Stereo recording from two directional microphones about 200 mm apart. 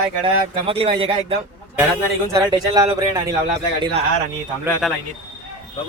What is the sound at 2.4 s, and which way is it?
Speech, 20° right (ahead or behind).